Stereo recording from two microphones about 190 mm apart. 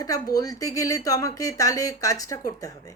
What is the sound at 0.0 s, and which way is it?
A woman's voice, 20° left (ahead or behind).